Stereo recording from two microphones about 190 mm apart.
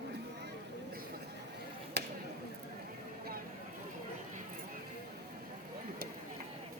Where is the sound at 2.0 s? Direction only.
60° right (ahead or behind).